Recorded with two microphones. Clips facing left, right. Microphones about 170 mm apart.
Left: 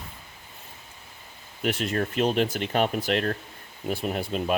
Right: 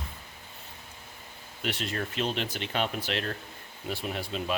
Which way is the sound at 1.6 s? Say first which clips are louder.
Left 6 dB; 50° left (ahead or behind).